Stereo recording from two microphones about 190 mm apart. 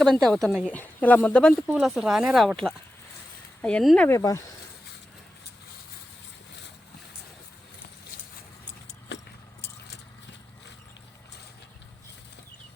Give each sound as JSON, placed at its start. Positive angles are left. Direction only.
{"t": 0.0, "sound": "speech", "side_deg": 0}
{"t": 9.1, "sound": "vehicle", "side_deg": 65}